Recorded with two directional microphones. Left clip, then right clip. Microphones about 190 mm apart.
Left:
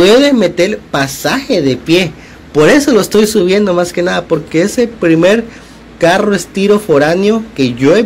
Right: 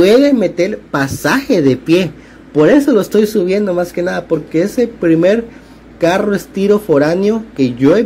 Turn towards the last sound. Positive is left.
turn(degrees=-20)  # may be behind; listen again after turning